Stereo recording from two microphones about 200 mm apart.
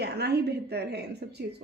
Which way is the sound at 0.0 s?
55° right (ahead or behind).